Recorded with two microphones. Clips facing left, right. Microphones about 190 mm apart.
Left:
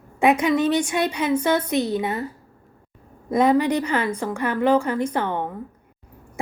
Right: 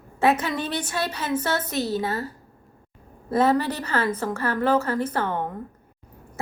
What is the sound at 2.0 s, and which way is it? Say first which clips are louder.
Speech: left 2 dB; 20° left (ahead or behind).